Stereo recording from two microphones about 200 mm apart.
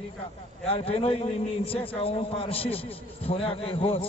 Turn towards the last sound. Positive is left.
turn(degrees=30)  # may be behind; listen again after turning